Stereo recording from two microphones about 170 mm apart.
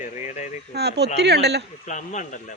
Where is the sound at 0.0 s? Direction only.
45° left (ahead or behind).